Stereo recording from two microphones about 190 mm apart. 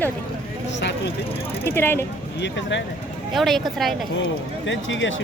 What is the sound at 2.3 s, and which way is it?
Speech, 65° left (ahead or behind).